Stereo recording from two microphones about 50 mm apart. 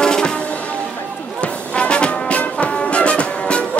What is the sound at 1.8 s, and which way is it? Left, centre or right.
Music, left.